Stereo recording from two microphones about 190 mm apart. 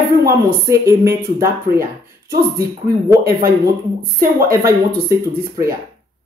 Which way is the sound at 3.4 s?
50° right (ahead or behind).